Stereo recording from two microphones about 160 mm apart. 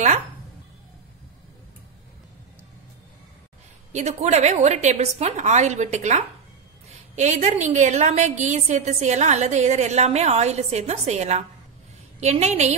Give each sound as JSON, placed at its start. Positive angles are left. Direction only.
{"t": 3.9, "sound": "a woman's voice", "side_deg": -45}